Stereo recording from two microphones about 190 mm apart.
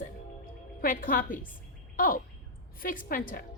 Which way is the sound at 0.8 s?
50° left (ahead or behind).